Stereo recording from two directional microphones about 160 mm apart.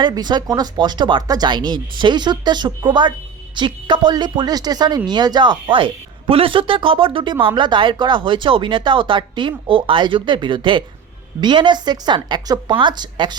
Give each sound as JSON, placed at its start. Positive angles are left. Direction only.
{"t": 0.0, "sound": "a woman's voice", "side_deg": -25}